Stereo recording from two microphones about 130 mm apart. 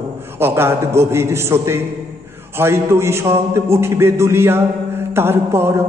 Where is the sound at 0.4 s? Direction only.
20° right (ahead or behind).